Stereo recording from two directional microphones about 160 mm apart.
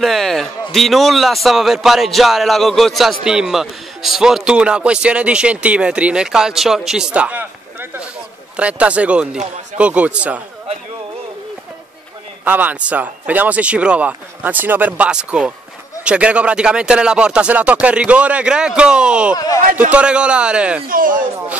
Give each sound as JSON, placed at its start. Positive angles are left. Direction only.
{"t": 0.0, "sound": "a man's voice", "side_deg": 0}
{"t": 8.5, "sound": "speech", "side_deg": -10}
{"t": 12.4, "sound": "speech", "side_deg": -10}
{"t": 19.3, "sound": "a man's voice", "side_deg": 25}
{"t": 19.9, "sound": "speech", "side_deg": -5}
{"t": 20.9, "sound": "speech", "side_deg": -60}